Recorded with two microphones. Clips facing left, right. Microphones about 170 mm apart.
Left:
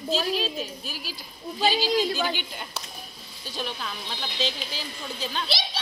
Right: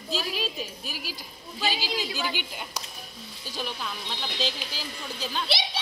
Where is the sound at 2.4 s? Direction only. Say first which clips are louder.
Even; 10° right (ahead or behind).